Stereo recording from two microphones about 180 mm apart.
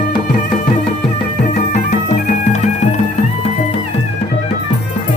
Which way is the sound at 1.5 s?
45° left (ahead or behind).